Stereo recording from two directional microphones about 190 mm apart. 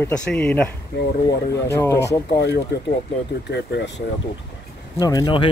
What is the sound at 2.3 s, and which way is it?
Speech, 65° left (ahead or behind).